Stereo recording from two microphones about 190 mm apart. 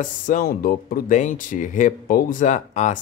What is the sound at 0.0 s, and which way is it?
Speech, 45° left (ahead or behind).